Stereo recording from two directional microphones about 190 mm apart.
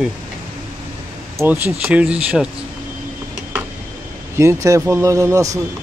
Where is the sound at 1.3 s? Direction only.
10° right (ahead or behind).